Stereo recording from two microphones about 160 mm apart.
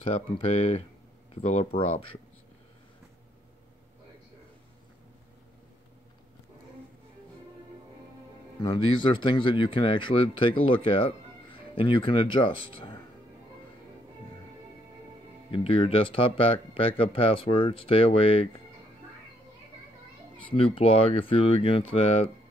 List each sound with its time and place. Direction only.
0.0 s speech: 35° left (ahead or behind)
8.5 s speech: 30° left (ahead or behind)
15.5 s speech: 35° left (ahead or behind)
20.5 s speech: 35° left (ahead or behind)